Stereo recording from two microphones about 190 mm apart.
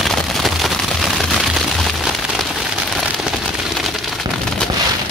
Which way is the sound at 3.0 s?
Centre (ahead or behind).